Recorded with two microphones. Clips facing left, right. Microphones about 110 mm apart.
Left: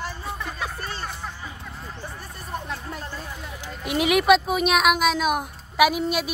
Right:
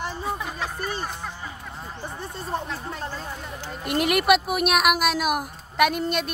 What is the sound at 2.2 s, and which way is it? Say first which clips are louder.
Speech: right 6 dB; 30° right (ahead or behind).